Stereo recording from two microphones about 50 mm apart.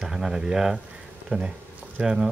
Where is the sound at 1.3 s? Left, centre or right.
Right.